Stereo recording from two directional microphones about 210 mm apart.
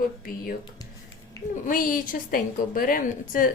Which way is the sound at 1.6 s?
40° left (ahead or behind).